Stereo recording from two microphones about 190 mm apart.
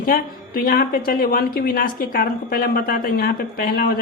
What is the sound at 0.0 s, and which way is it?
A woman's voice, 50° left (ahead or behind).